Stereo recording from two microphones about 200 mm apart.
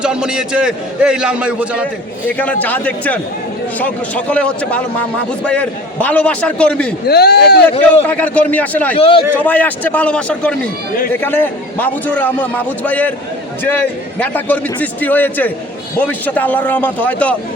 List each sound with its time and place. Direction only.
0.0 s a man's voice: 5° right (ahead or behind)
2.2 s a man's voice: 10° left (ahead or behind)
7.1 s speech: 55° left (ahead or behind)
8.0 s a man's voice: 10° left (ahead or behind)
9.0 s a man's voice: 25° left (ahead or behind)
9.4 s a man's voice: 10° left (ahead or behind)